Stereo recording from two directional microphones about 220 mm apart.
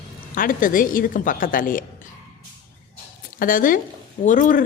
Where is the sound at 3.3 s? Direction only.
40° left (ahead or behind).